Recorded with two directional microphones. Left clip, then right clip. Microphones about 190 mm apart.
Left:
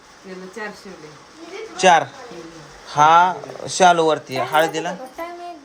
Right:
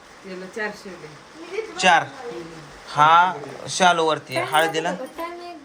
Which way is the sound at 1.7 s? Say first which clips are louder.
Left 3 dB; 40° left (ahead or behind).